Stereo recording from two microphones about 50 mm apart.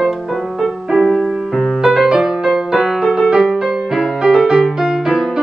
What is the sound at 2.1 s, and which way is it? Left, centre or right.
Music, centre.